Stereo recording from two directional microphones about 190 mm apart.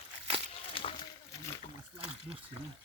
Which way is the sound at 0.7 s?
30° left (ahead or behind).